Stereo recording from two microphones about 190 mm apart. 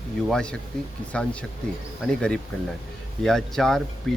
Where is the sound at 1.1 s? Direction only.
5° left (ahead or behind).